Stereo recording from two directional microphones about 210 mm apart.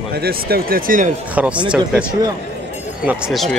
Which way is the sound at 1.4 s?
5° right (ahead or behind).